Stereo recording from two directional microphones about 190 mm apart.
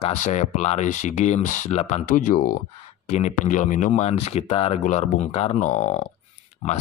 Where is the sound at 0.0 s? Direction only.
40° left (ahead or behind).